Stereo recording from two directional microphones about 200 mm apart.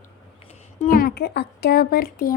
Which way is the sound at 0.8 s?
45° left (ahead or behind).